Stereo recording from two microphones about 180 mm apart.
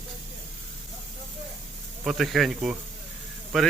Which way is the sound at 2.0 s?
Centre (ahead or behind).